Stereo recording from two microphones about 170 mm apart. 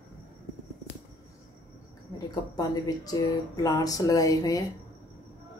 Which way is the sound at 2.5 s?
20° left (ahead or behind).